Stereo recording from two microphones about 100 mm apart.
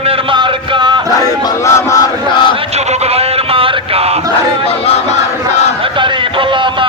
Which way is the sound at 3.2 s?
75° right (ahead or behind).